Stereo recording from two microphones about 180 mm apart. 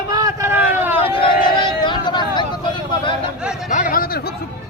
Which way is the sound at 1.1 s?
30° left (ahead or behind).